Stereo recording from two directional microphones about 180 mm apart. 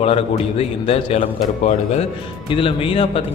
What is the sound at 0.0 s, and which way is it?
A man's voice, 35° left (ahead or behind).